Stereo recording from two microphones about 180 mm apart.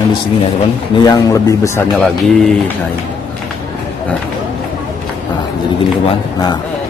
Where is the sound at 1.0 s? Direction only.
20° left (ahead or behind).